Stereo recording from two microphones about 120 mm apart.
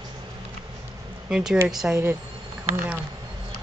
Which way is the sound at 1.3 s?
5° right (ahead or behind).